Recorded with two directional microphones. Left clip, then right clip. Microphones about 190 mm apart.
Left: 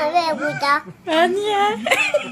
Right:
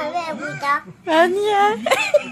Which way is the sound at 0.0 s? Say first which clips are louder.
Left 6 dB; 25° left (ahead or behind).